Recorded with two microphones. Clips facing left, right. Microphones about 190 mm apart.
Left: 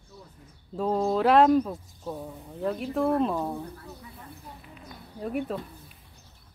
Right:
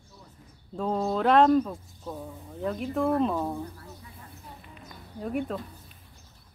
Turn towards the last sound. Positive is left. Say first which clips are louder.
# even
turn(degrees=0)  # may be behind; listen again after turning